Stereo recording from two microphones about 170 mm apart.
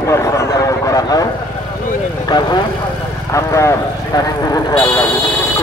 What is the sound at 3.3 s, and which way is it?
Speech, 15° left (ahead or behind).